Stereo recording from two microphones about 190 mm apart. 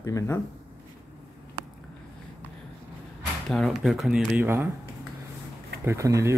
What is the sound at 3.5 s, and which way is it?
Speech, centre (ahead or behind).